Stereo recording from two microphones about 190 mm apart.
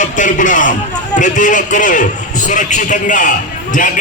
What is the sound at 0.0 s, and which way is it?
A man's voice, 40° left (ahead or behind).